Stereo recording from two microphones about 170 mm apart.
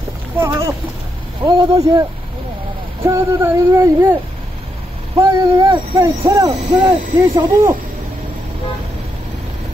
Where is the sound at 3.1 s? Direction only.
20° right (ahead or behind).